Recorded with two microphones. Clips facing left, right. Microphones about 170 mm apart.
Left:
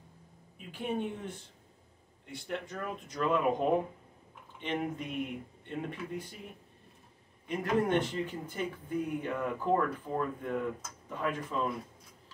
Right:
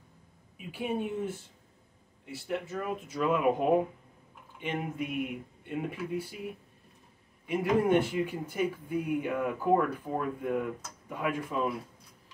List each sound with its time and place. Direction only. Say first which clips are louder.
0.6 s speech: right 2 dB; 10° right (ahead or behind)
7.4 s speech: right 4 dB; 10° right (ahead or behind)